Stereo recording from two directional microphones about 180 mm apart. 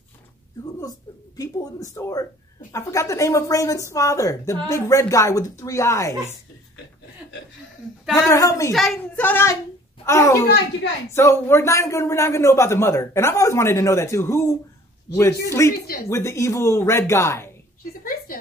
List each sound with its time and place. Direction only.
0.7 s a woman's voice: 20° left (ahead or behind)
8.1 s a woman's voice: 20° left (ahead or behind)
8.7 s a woman's voice: 5° left (ahead or behind)
15.6 s a woman's voice: 15° left (ahead or behind)
18.0 s a sound: 50° left (ahead or behind)